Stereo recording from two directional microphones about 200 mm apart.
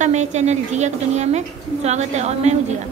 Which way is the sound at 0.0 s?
35° right (ahead or behind).